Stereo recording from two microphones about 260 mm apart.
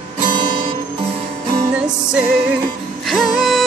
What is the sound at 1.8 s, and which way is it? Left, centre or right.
Music, centre.